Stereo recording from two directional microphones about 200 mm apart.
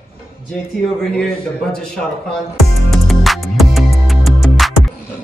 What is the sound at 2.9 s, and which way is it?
Music, centre (ahead or behind).